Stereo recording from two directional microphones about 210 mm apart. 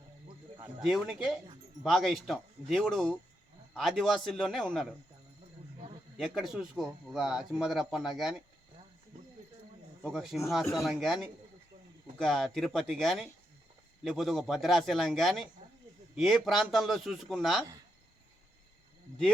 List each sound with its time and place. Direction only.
0.5 s a sound: 20° right (ahead or behind)
0.9 s speech: centre (ahead or behind)
6.1 s speech: centre (ahead or behind)
10.0 s speech: centre (ahead or behind)